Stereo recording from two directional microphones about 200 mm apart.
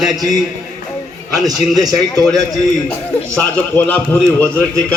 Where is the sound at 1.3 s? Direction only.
20° right (ahead or behind).